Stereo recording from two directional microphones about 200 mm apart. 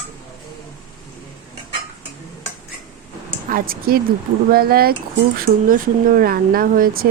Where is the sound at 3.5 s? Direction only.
45° right (ahead or behind).